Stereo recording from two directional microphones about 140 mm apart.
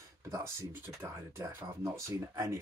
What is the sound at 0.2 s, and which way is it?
Speech, 20° right (ahead or behind).